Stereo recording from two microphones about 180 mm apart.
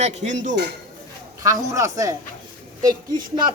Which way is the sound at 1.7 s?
15° right (ahead or behind).